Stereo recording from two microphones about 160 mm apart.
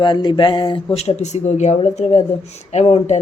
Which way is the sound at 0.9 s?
40° left (ahead or behind).